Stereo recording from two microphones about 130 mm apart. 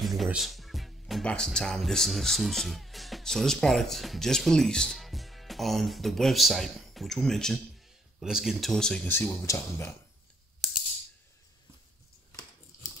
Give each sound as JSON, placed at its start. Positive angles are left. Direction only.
{"t": 0.0, "sound": "speech", "side_deg": 0}
{"t": 9.5, "sound": "speech", "side_deg": 20}